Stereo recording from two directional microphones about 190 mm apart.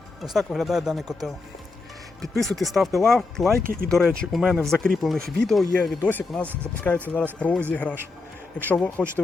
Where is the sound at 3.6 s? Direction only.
50° right (ahead or behind).